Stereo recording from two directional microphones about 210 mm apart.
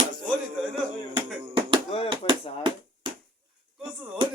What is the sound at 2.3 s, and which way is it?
Bouncing, 20° right (ahead or behind).